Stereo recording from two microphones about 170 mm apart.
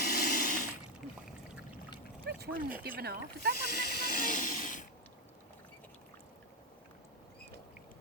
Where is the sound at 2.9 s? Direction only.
70° right (ahead or behind).